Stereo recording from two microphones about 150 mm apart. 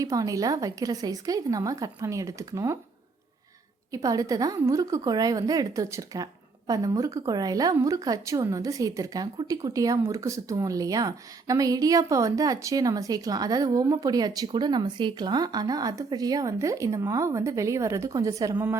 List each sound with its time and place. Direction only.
0.0 s a woman's voice: 20° right (ahead or behind)
3.9 s a woman's voice: 25° right (ahead or behind)